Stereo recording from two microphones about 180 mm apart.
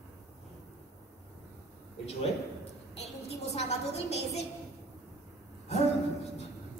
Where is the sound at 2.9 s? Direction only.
35° left (ahead or behind).